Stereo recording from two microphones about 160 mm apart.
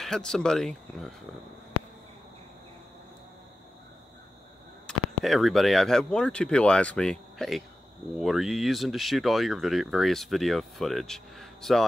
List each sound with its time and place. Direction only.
0.0 s speech: 5° left (ahead or behind)
4.8 s speech: centre (ahead or behind)